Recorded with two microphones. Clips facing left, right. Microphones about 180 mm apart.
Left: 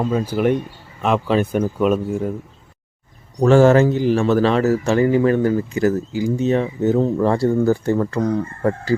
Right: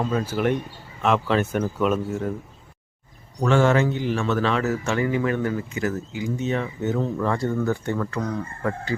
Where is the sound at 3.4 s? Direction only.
40° left (ahead or behind).